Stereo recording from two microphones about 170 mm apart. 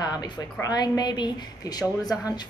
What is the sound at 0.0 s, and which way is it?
A woman's voice, 20° left (ahead or behind).